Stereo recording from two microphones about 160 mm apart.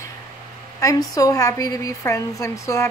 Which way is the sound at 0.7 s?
20° left (ahead or behind).